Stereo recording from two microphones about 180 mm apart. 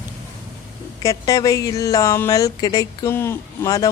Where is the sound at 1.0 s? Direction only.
20° left (ahead or behind).